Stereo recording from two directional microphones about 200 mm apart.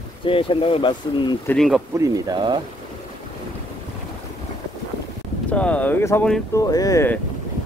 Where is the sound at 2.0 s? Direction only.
20° right (ahead or behind).